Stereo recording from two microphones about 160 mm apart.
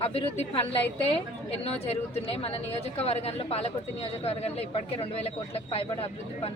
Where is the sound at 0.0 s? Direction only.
35° left (ahead or behind).